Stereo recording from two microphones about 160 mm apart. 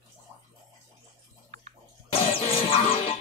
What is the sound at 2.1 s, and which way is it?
Music, 35° left (ahead or behind).